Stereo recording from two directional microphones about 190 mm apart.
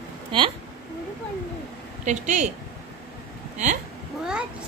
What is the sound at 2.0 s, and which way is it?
Speech, 40° right (ahead or behind).